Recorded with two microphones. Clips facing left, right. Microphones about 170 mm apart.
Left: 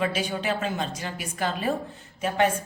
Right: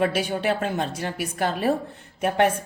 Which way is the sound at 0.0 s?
55° right (ahead or behind).